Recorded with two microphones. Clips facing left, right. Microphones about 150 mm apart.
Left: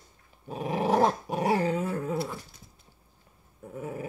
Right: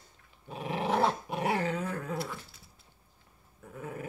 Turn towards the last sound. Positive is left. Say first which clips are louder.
# left 5 dB
turn(degrees=20)  # may be behind; listen again after turning